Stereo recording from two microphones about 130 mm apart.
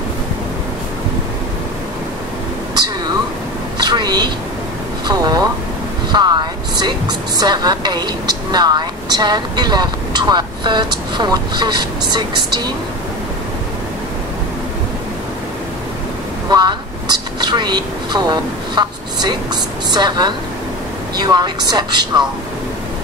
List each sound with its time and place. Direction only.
3.7 s a sound: 35° right (ahead or behind)
6.1 s vehicle: 35° right (ahead or behind)
6.8 s a woman's voice: 35° right (ahead or behind)
16.4 s vehicle: 35° right (ahead or behind)
17.4 s a woman's voice: 35° right (ahead or behind)